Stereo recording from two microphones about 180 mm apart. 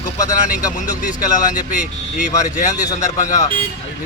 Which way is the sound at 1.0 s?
45° left (ahead or behind).